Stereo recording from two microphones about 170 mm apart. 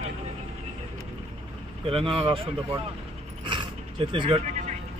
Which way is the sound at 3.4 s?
30° right (ahead or behind).